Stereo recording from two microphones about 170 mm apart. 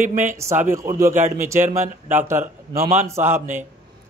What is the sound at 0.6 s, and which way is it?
Speech, 15° right (ahead or behind).